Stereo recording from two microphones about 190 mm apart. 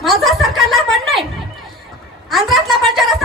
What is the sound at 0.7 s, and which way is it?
Speech, centre (ahead or behind).